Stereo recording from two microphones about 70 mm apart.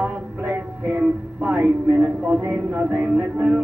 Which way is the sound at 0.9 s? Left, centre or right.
Centre.